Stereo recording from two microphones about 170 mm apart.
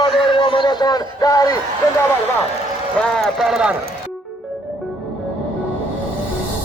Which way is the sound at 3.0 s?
Centre (ahead or behind).